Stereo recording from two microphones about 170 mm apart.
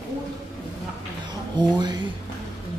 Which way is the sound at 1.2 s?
25° right (ahead or behind).